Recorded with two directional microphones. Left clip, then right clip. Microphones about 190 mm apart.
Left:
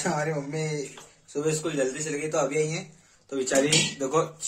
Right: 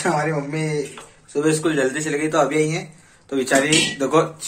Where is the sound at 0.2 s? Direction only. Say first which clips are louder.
Right 6 dB; centre (ahead or behind).